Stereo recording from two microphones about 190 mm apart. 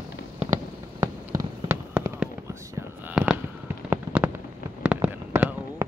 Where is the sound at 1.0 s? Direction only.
20° right (ahead or behind).